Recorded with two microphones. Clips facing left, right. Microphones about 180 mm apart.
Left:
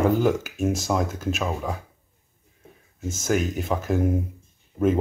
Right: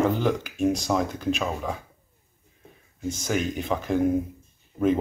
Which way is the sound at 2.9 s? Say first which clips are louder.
Left 2 dB; 5° left (ahead or behind).